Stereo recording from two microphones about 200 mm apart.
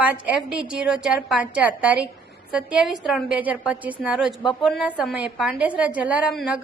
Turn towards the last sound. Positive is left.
turn(degrees=0)  # may be behind; listen again after turning